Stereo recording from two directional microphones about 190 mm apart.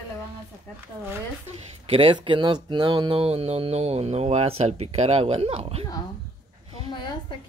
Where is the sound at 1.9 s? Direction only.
25° right (ahead or behind).